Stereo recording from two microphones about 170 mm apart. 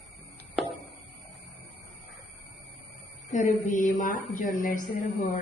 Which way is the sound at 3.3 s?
45° left (ahead or behind).